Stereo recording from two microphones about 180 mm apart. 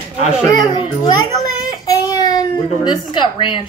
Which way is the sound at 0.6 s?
25° left (ahead or behind).